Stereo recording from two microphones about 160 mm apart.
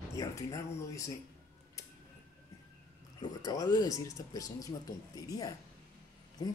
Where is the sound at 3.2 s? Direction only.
25° left (ahead or behind).